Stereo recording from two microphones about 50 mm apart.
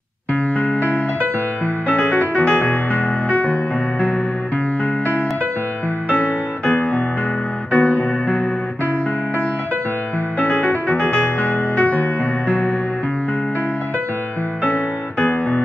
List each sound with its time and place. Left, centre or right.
0.3 s music: left
6.0 s music: left
10.4 s music: left
14.6 s music: left